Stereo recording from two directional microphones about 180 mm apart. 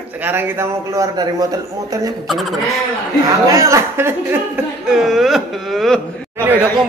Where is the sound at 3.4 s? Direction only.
15° right (ahead or behind).